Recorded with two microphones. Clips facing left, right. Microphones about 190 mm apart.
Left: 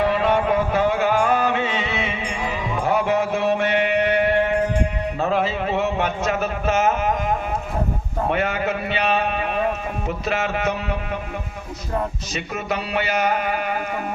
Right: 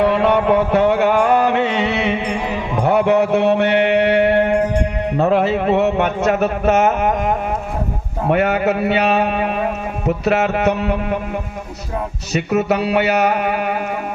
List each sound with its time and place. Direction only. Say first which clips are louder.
0.0 s music: right 5 dB; 65° right (ahead or behind)
5.1 s speech: right 8 dB; 55° right (ahead or behind)
12.3 s speech: right 14 dB; 65° right (ahead or behind)